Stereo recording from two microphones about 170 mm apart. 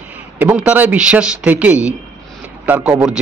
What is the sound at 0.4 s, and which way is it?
A man's voice, 10° right (ahead or behind).